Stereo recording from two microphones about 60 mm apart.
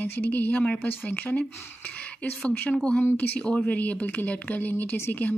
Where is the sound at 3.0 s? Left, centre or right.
Left.